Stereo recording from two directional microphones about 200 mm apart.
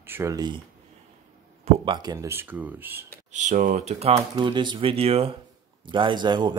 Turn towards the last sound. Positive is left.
turn(degrees=-20)  # may be behind; listen again after turning